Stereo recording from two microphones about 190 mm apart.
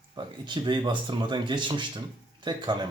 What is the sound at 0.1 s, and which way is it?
Speech, 25° right (ahead or behind).